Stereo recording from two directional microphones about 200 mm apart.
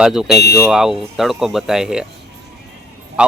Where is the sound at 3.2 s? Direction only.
5° right (ahead or behind).